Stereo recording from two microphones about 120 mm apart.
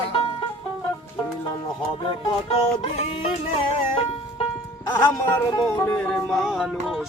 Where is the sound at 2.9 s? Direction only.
60° left (ahead or behind).